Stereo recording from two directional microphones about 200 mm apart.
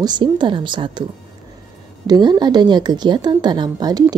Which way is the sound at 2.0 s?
20° right (ahead or behind).